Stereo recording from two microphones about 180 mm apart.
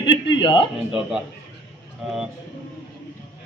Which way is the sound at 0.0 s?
30° left (ahead or behind).